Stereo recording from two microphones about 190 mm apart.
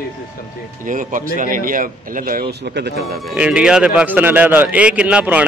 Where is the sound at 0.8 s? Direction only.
45° right (ahead or behind).